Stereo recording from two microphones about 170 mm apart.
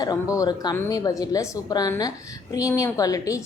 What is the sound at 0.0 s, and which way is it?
A woman's voice, 20° left (ahead or behind).